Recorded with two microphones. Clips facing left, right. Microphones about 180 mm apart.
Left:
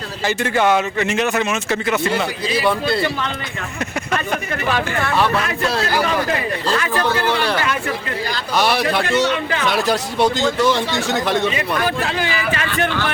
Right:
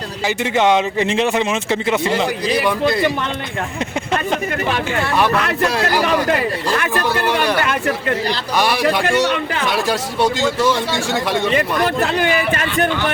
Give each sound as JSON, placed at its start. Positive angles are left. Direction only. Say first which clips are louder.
{"t": 0.3, "sound": "speech", "louder": "right 1 dB", "side_deg": -20}
{"t": 4.9, "sound": "speech", "louder": "right 3 dB", "side_deg": -15}
{"t": 6.7, "sound": "speech", "louder": "left 2 dB", "side_deg": -15}
{"t": 8.5, "sound": "speech", "louder": "even", "side_deg": -10}
{"t": 10.4, "sound": "speech", "louder": "even", "side_deg": -10}
{"t": 11.5, "sound": "speech", "louder": "right 3 dB", "side_deg": -60}